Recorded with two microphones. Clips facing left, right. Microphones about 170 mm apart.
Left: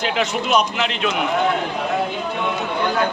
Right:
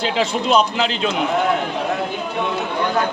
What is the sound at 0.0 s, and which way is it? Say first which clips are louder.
A man's voice: right 2 dB; 30° right (ahead or behind).